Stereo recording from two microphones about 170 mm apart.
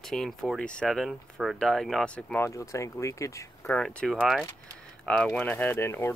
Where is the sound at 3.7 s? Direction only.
5° left (ahead or behind).